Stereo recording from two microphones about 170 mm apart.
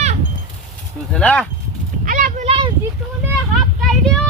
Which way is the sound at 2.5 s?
30° right (ahead or behind).